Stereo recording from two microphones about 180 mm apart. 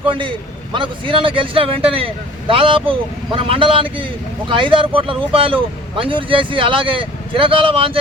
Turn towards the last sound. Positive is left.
turn(degrees=-30)  # may be behind; listen again after turning